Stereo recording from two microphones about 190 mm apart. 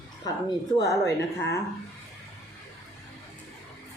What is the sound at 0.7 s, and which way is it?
Speech, 15° left (ahead or behind).